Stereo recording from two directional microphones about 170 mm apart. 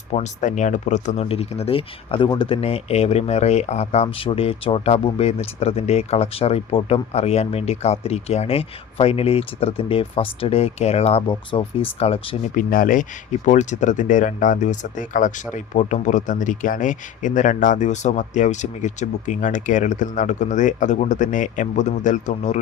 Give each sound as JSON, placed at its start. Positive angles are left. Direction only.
{"t": 0.1, "sound": "speech", "side_deg": 45}
{"t": 12.5, "sound": "speech", "side_deg": 55}